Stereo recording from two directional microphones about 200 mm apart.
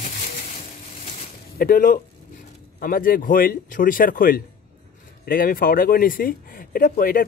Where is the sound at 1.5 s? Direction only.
45° left (ahead or behind).